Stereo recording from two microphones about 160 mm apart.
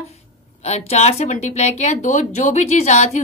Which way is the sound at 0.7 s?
45° left (ahead or behind).